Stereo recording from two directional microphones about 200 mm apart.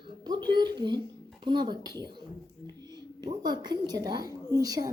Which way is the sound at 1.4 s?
20° right (ahead or behind).